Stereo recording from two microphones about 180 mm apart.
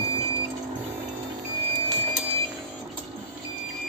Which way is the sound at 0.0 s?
30° right (ahead or behind).